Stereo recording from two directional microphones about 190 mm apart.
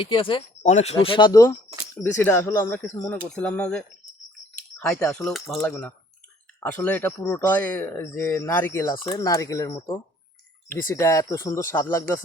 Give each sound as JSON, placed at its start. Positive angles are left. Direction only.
{"t": 0.0, "sound": "speech", "side_deg": 25}
{"t": 0.6, "sound": "speech", "side_deg": 35}